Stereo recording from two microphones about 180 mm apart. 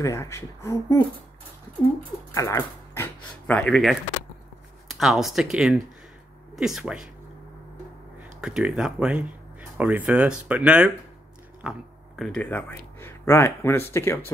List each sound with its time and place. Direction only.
0.0 s speech: 15° left (ahead or behind)
2.3 s speech: 15° left (ahead or behind); by 7.1 s 5° right (ahead or behind)
8.4 s speech: 5° right (ahead or behind)
12.2 s speech: 5° left (ahead or behind)